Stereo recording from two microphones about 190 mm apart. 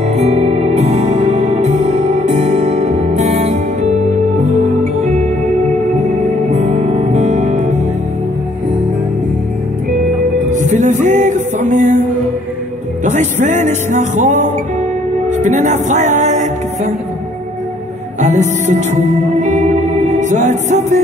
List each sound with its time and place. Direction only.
0.1 s music: 35° right (ahead or behind)
6.5 s music: 40° right (ahead or behind)
10.5 s music: 40° right (ahead or behind)
13.0 s music: 40° right (ahead or behind)
18.2 s music: 40° right (ahead or behind)
20.2 s music: 40° right (ahead or behind)